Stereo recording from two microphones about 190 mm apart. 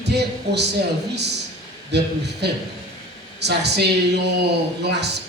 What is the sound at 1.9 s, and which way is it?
A man's voice, 65° right (ahead or behind).